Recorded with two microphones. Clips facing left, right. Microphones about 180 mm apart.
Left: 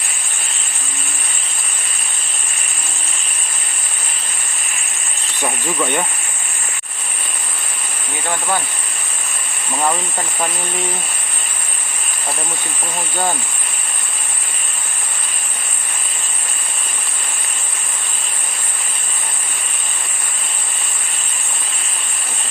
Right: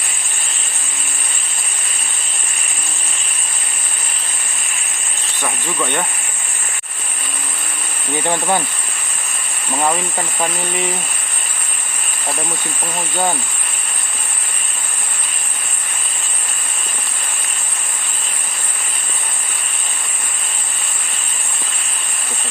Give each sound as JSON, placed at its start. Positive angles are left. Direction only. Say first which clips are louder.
{"t": 5.4, "sound": "speech", "louder": "left 2 dB", "side_deg": 10}
{"t": 8.3, "sound": "speech", "louder": "right 3 dB", "side_deg": -20}
{"t": 9.7, "sound": "speech", "louder": "right 1 dB", "side_deg": -5}